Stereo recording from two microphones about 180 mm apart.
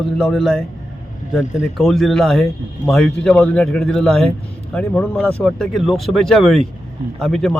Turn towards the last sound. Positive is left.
turn(degrees=0)  # may be behind; listen again after turning